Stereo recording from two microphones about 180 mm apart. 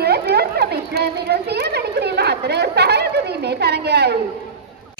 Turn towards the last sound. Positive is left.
turn(degrees=-65)  # may be behind; listen again after turning